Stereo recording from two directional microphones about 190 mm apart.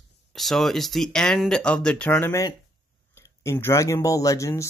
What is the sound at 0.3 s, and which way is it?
Speech, centre (ahead or behind).